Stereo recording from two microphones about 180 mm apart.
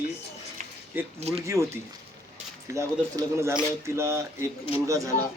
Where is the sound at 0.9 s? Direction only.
10° right (ahead or behind).